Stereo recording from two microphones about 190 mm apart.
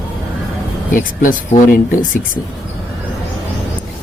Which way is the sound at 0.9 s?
45° left (ahead or behind).